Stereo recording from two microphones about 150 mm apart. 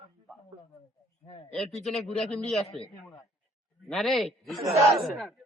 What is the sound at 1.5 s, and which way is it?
Speech, centre (ahead or behind).